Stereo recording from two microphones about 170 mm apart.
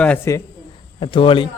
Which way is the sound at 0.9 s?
30° left (ahead or behind).